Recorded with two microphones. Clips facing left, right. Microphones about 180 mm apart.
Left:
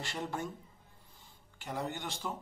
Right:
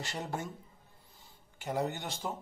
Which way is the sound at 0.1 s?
40° right (ahead or behind).